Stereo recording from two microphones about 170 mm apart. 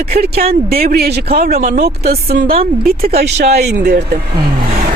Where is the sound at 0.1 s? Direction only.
65° right (ahead or behind).